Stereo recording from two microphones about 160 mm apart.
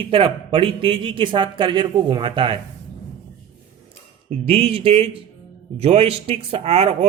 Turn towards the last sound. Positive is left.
turn(degrees=-40)  # may be behind; listen again after turning